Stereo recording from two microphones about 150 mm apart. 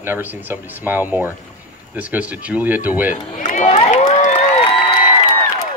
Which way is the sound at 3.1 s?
60° left (ahead or behind).